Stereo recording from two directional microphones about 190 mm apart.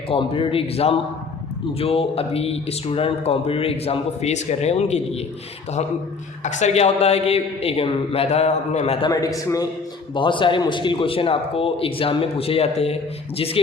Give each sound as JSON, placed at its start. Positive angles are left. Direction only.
{"t": 0.1, "sound": "a man's voice", "side_deg": 30}
{"t": 6.4, "sound": "speech", "side_deg": 40}
{"t": 9.0, "sound": "a man's voice", "side_deg": 20}